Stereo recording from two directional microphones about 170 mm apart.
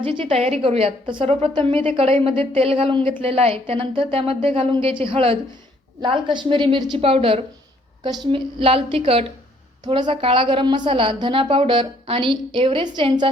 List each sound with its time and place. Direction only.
0.0 s a woman's voice: 30° right (ahead or behind)